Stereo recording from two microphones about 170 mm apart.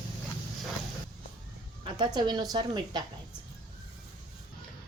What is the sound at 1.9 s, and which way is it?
A woman's voice, 25° right (ahead or behind).